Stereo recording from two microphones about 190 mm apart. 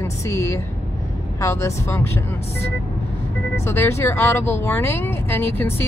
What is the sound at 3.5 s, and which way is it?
Speech, 15° left (ahead or behind).